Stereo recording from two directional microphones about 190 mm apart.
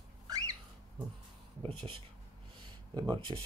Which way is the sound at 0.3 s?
20° right (ahead or behind).